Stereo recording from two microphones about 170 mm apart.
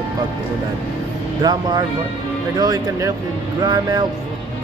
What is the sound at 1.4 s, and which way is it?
Speech, 25° right (ahead or behind).